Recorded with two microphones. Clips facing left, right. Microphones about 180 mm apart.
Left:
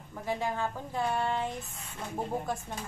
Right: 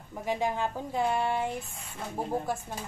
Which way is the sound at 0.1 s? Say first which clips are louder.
Right 3 dB; 15° right (ahead or behind).